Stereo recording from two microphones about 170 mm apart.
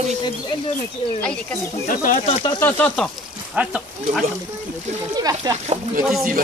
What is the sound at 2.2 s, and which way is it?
Speech, 30° left (ahead or behind).